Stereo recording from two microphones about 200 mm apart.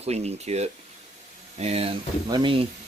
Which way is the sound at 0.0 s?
30° right (ahead or behind).